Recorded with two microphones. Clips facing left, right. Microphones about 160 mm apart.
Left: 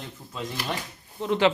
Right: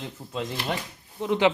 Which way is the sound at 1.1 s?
15° right (ahead or behind).